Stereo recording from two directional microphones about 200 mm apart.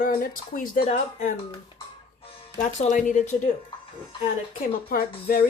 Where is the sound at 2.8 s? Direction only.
40° left (ahead or behind).